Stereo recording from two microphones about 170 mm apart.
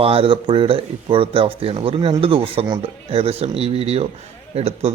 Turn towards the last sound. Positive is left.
turn(degrees=-35)  # may be behind; listen again after turning